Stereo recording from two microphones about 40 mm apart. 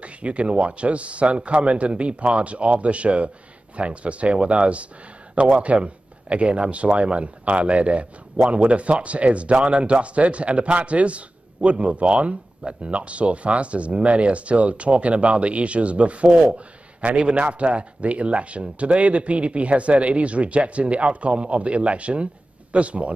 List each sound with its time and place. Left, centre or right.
0.0 s a man's voice: right